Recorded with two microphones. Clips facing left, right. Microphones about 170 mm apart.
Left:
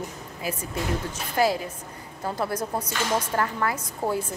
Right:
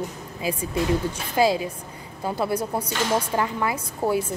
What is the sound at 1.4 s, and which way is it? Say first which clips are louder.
A woman's voice: right 3 dB; 15° right (ahead or behind).